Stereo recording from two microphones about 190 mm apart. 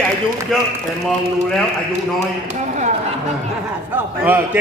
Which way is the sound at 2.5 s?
40° right (ahead or behind).